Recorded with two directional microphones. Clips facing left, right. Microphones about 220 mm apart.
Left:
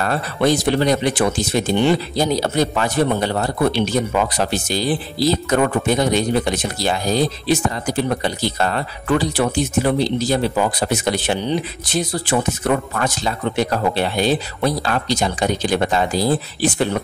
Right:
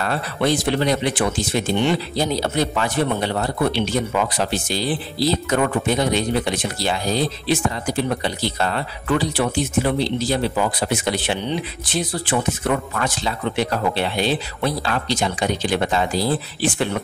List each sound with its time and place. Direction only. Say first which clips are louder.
0.0 s speech: left 3 dB; 45° left (ahead or behind)